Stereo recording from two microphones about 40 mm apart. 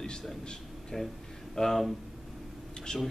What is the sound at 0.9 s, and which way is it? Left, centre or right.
Speech, centre.